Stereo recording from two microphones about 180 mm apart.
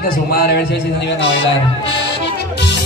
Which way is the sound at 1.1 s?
90° left.